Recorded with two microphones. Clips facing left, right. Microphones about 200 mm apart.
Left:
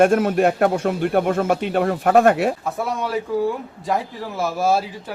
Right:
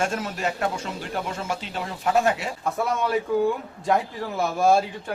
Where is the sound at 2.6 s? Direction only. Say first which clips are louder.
Even; centre (ahead or behind).